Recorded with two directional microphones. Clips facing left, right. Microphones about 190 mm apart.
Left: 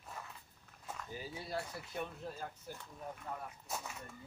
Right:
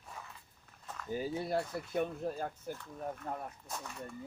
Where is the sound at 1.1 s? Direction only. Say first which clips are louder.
Right 9 dB; 50° right (ahead or behind).